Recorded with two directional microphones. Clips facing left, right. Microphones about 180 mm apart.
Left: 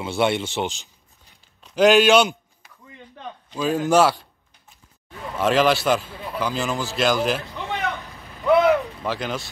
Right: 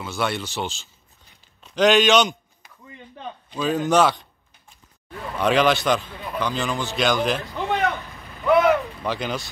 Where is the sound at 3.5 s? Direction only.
5° left (ahead or behind).